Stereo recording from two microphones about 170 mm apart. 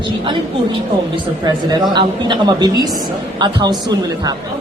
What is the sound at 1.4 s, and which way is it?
A man's voice, 25° right (ahead or behind).